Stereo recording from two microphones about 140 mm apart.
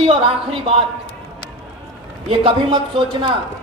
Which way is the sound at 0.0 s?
40° right (ahead or behind).